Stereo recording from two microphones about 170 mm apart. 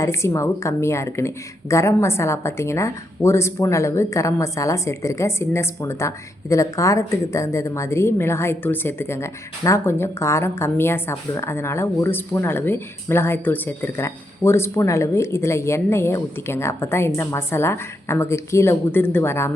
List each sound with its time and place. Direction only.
0.0 s a woman's voice: 15° left (ahead or behind)